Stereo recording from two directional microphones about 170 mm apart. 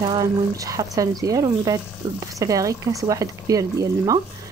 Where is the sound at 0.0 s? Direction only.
25° right (ahead or behind).